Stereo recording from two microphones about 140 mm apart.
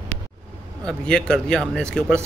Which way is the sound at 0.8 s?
5° left (ahead or behind).